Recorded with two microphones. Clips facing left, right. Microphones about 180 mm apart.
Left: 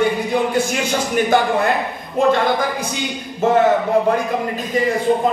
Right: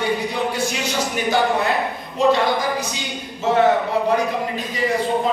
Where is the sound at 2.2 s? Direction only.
50° left (ahead or behind).